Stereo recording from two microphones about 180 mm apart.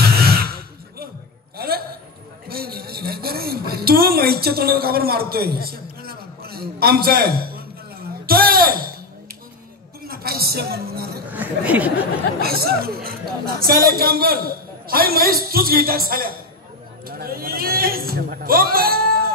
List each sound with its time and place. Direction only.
0.0 s a sound: 60° right (ahead or behind)
2.4 s a woman's voice: 60° right (ahead or behind)
10.0 s speech: 55° right (ahead or behind)
11.3 s speech: 10° right (ahead or behind)
12.4 s speech: 60° right (ahead or behind)